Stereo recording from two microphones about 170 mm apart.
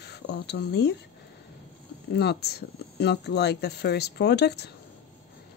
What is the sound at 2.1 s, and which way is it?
Speech, 75° left (ahead or behind).